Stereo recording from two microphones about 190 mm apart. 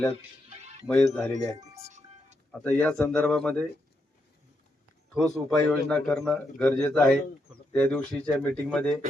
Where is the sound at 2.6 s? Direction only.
5° left (ahead or behind).